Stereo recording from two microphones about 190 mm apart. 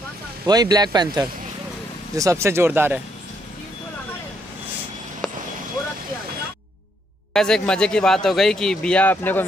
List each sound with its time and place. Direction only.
0.5 s speech: 20° right (ahead or behind)
7.3 s speech: 5° left (ahead or behind)